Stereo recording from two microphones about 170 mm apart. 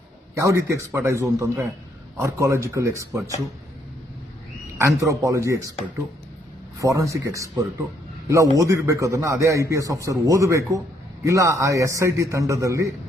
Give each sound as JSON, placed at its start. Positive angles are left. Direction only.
{"t": 0.3, "sound": "a man's voice", "side_deg": -15}
{"t": 4.8, "sound": "a man's voice", "side_deg": -20}
{"t": 6.7, "sound": "a man's voice", "side_deg": -20}